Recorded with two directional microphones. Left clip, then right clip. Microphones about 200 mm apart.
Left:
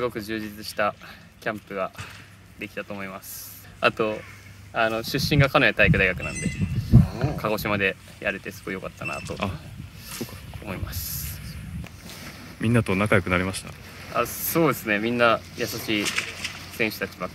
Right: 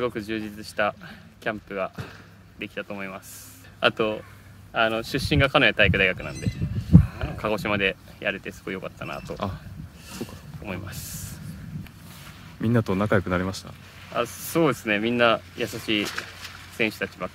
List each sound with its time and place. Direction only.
0.0 s speech: 5° right (ahead or behind)
6.3 s speech: 55° right (ahead or behind)
7.3 s speech: 5° right (ahead or behind)
10.2 s a sound: 5° right (ahead or behind)
12.5 s speech: 5° right (ahead or behind)
16.0 s speech: 55° right (ahead or behind)
16.7 s speech: 5° right (ahead or behind)